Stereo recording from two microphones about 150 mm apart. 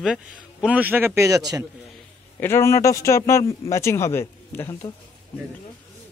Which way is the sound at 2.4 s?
15° left (ahead or behind).